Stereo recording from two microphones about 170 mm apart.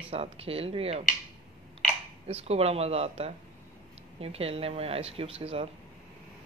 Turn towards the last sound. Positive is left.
turn(degrees=-35)  # may be behind; listen again after turning